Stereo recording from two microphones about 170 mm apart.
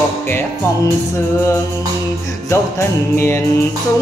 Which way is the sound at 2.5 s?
15° left (ahead or behind).